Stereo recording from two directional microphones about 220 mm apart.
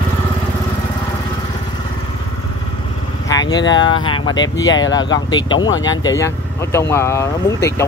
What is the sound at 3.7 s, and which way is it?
Speech, 20° left (ahead or behind).